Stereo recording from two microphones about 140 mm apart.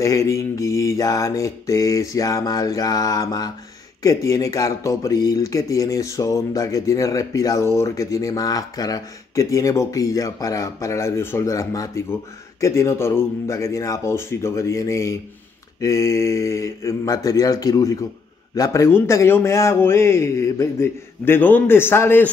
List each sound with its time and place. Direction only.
0.0 s a man's voice: 20° left (ahead or behind)